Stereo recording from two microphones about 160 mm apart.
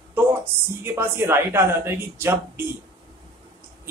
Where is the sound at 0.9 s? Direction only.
15° right (ahead or behind).